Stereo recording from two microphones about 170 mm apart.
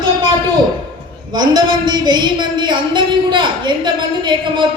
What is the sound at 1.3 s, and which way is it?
A woman's voice, 25° right (ahead or behind).